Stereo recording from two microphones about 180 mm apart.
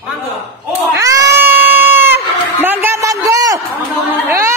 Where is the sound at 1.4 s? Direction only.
10° right (ahead or behind).